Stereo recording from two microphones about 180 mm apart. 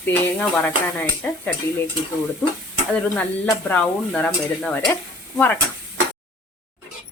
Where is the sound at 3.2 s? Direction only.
10° left (ahead or behind).